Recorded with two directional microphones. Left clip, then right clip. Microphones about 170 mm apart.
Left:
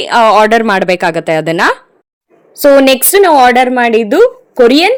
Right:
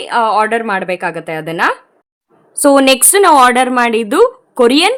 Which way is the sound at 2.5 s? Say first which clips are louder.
Left 3 dB; 10° left (ahead or behind).